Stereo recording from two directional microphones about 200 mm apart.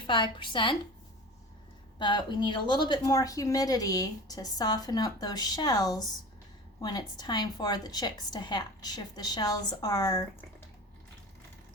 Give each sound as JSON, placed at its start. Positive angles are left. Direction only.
{"t": 0.1, "sound": "a woman's voice", "side_deg": 25}
{"t": 2.0, "sound": "a woman's voice", "side_deg": 20}